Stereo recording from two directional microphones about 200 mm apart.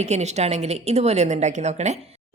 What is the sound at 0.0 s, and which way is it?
A woman's voice, 35° right (ahead or behind).